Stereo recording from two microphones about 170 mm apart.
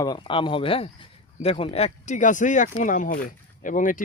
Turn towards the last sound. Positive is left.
turn(degrees=50)  # may be behind; listen again after turning